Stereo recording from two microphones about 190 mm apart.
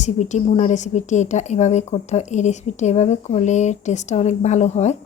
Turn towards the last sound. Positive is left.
turn(degrees=35)  # may be behind; listen again after turning